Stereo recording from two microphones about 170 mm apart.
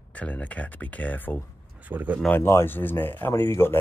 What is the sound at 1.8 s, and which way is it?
Speech, 10° right (ahead or behind).